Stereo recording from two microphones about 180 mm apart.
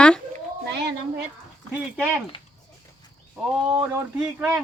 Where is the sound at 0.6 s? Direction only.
70° right (ahead or behind).